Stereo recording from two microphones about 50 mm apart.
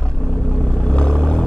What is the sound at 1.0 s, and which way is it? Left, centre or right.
Vehicle, centre.